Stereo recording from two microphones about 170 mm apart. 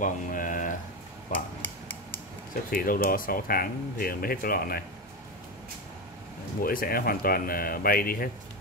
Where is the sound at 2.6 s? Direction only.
55° left (ahead or behind).